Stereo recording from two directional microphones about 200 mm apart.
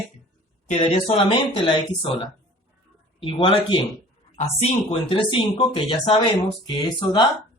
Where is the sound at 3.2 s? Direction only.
25° left (ahead or behind).